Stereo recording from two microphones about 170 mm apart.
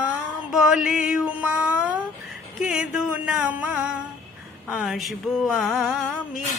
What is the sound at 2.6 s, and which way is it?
Music, 5° right (ahead or behind).